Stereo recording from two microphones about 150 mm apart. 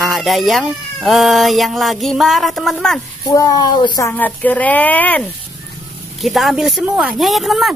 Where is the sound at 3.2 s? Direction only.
25° left (ahead or behind).